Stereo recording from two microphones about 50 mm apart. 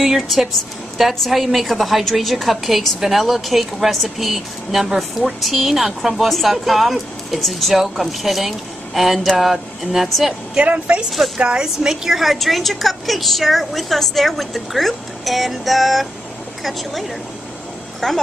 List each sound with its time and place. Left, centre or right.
0.0 s a woman's voice: centre
10.5 s a woman's voice: right
11.1 s a woman's voice: centre
11.3 s a woman's voice: centre
18.0 s speech: centre